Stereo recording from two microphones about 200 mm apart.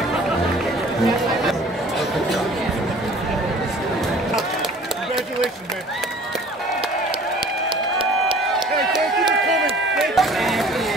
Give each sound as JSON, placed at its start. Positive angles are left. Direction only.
{"t": 1.0, "sound": "chatter", "side_deg": 0}
{"t": 8.0, "sound": "run", "side_deg": -25}
{"t": 9.9, "sound": "run", "side_deg": 0}